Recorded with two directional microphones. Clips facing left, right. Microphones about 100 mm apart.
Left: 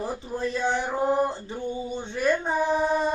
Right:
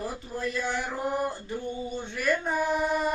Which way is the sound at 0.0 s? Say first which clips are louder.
Left 3 dB; 25° left (ahead or behind).